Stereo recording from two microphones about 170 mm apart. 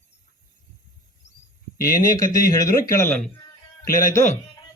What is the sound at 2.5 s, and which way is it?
Speech, 20° left (ahead or behind).